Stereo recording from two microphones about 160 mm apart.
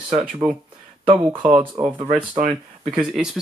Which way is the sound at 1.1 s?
35° right (ahead or behind).